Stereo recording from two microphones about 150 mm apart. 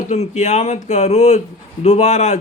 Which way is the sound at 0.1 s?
50° left (ahead or behind).